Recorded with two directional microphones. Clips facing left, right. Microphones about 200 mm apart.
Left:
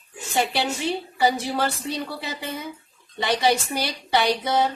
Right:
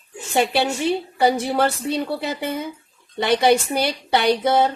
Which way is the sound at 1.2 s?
60° right (ahead or behind).